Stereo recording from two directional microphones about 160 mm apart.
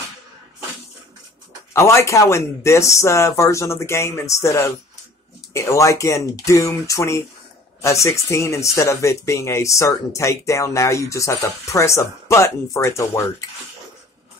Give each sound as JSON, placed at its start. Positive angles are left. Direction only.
{"t": 1.7, "sound": "speech", "side_deg": 20}